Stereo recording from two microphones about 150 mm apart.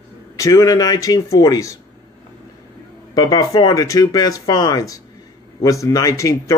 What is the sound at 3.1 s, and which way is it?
Speech, 25° left (ahead or behind).